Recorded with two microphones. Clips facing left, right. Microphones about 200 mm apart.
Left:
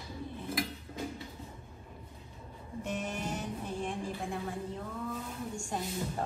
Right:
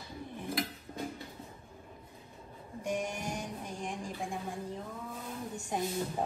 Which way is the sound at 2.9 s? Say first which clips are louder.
Right 1 dB; 15° right (ahead or behind).